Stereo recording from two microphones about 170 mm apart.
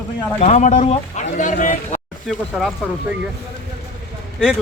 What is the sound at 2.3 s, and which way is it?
Speech, centre (ahead or behind).